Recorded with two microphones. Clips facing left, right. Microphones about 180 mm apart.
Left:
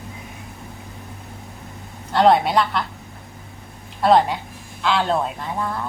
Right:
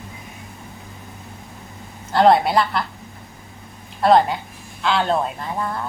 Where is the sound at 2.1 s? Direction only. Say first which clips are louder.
Right 1 dB; centre (ahead or behind).